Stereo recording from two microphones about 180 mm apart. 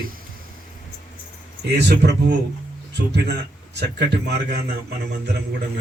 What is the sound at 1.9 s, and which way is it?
Speech, 70° right (ahead or behind).